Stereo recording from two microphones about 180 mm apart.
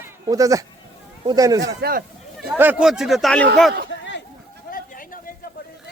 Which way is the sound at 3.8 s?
90° left.